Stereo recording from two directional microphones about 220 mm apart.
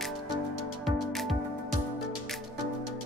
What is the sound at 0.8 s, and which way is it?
Music, centre (ahead or behind).